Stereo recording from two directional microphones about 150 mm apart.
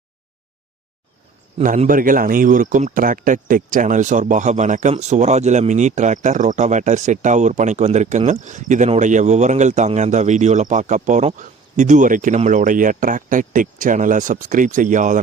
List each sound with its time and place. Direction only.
1.6 s a man's voice: 40° right (ahead or behind)
1.9 s speech: 65° right (ahead or behind)